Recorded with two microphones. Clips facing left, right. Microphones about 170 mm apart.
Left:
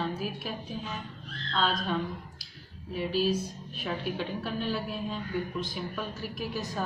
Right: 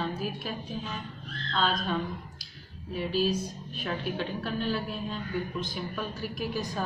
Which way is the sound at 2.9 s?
Centre (ahead or behind).